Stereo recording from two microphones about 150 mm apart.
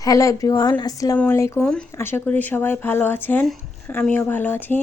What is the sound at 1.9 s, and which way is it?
Speech, 15° left (ahead or behind).